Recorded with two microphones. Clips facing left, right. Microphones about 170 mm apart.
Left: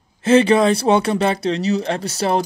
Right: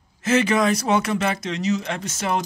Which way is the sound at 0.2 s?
30° left (ahead or behind).